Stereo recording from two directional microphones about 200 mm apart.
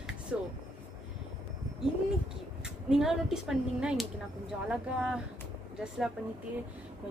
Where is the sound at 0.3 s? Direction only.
5° right (ahead or behind).